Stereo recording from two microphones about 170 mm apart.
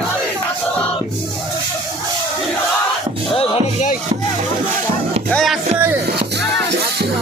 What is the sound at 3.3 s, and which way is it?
Music, 35° left (ahead or behind).